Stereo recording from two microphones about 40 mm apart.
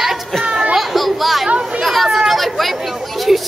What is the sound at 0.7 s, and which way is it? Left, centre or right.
Children playing, centre.